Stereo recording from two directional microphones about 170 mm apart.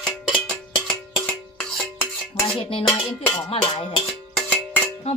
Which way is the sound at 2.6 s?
30° left (ahead or behind).